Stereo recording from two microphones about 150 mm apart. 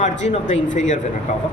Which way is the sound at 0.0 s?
50° left (ahead or behind).